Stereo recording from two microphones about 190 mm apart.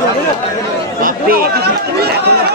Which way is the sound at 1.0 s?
50° right (ahead or behind).